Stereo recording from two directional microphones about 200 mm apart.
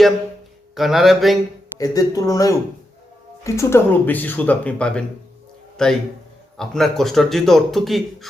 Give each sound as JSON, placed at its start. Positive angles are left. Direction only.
{"t": 0.8, "sound": "a man's voice", "side_deg": 0}
{"t": 1.8, "sound": "a man's voice", "side_deg": 20}